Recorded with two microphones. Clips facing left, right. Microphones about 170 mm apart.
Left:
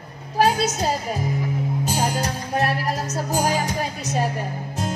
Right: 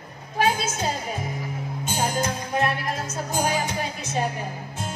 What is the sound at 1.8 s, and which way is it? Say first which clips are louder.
Music: right 1 dB; 40° left (ahead or behind).